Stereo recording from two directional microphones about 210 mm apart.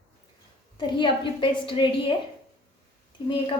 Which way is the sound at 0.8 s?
20° left (ahead or behind).